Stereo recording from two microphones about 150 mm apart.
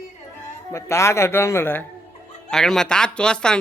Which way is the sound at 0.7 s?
20° left (ahead or behind).